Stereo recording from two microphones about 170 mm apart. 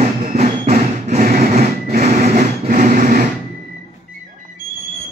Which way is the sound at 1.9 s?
45° right (ahead or behind).